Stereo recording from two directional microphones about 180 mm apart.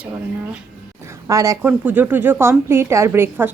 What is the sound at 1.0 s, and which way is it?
A woman's voice, 15° right (ahead or behind).